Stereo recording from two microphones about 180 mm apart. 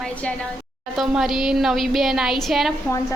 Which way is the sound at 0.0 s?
5° left (ahead or behind).